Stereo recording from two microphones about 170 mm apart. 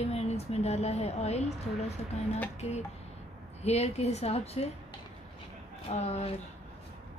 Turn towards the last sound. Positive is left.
turn(degrees=40)  # may be behind; listen again after turning